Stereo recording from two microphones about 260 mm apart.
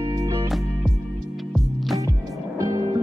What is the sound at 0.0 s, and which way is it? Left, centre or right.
Music, centre.